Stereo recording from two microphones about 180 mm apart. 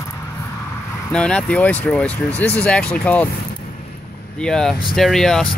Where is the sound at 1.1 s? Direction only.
5° left (ahead or behind).